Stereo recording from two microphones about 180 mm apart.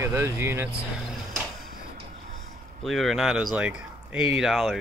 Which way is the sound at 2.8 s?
Centre (ahead or behind).